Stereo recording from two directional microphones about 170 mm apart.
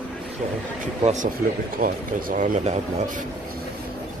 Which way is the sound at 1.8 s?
55° right (ahead or behind).